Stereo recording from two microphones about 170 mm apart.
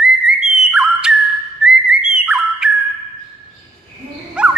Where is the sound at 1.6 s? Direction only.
5° right (ahead or behind).